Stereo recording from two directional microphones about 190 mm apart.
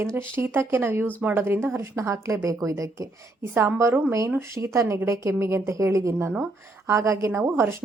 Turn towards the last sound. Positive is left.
turn(degrees=-15)  # may be behind; listen again after turning